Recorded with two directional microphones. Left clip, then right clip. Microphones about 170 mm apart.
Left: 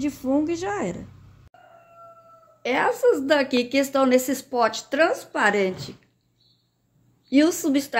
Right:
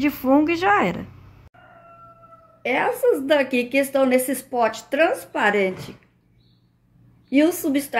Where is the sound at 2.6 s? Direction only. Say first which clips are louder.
Even; 10° left (ahead or behind).